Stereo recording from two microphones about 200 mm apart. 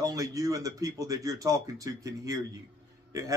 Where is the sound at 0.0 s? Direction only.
15° right (ahead or behind).